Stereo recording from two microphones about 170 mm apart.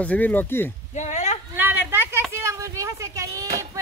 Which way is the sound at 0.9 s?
45° left (ahead or behind).